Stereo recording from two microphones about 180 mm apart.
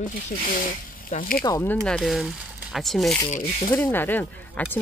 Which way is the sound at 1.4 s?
15° left (ahead or behind).